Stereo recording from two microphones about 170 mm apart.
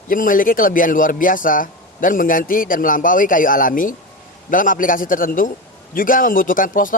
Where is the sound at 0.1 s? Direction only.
55° left (ahead or behind).